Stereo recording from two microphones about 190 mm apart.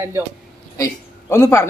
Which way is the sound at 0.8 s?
15° left (ahead or behind).